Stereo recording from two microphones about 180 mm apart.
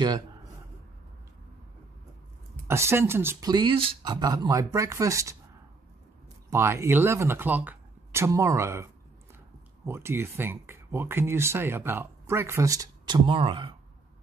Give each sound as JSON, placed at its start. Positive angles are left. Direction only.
{"t": 2.7, "sound": "speech", "side_deg": -15}
{"t": 6.5, "sound": "speech", "side_deg": -15}
{"t": 9.8, "sound": "speech", "side_deg": -15}